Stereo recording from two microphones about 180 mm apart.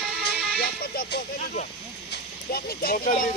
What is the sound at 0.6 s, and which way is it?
Speech, 60° left (ahead or behind).